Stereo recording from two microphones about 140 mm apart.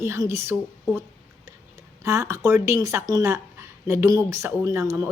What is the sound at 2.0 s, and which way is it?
A woman's voice, 20° right (ahead or behind).